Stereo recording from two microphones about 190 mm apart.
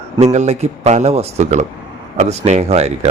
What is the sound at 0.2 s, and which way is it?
A man's voice, 35° right (ahead or behind).